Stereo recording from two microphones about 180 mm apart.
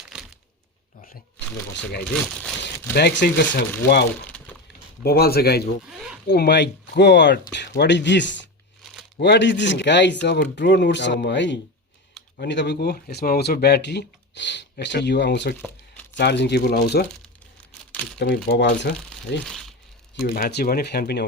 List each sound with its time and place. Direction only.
0.0 s crumpling: 5° right (ahead or behind)
1.7 s speech: 65° left (ahead or behind)
2.4 s speech: 10° left (ahead or behind)
2.9 s speech: 75° left (ahead or behind)
4.3 s a sound: 5° left (ahead or behind)
5.0 s speech: 60° left (ahead or behind)
5.8 s a sound: 5° right (ahead or behind)
6.2 s speech: 65° left (ahead or behind)
18.4 s speech: 70° left (ahead or behind)
19.5 s crumpling: centre (ahead or behind)
20.2 s speech: 60° left (ahead or behind)